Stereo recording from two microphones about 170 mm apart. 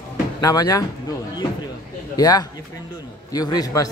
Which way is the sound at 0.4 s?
20° left (ahead or behind).